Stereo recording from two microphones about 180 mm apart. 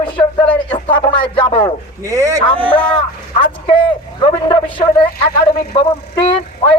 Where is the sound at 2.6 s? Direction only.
10° left (ahead or behind).